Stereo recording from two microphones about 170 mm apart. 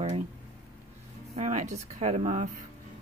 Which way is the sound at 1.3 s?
45° right (ahead or behind).